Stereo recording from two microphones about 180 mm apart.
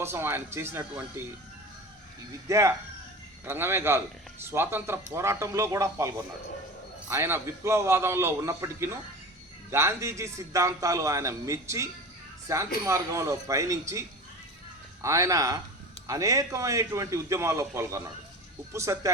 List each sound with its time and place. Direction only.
0.0 s a man's voice: 15° right (ahead or behind)
2.5 s a man's voice: 15° right (ahead or behind)
15.0 s a man's voice: 15° right (ahead or behind)